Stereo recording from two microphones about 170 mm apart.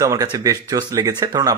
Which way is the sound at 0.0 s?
20° right (ahead or behind).